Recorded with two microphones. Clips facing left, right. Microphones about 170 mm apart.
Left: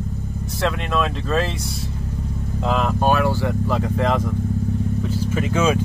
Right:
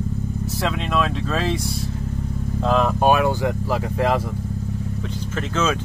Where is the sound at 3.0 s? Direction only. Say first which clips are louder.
Even; 15° right (ahead or behind).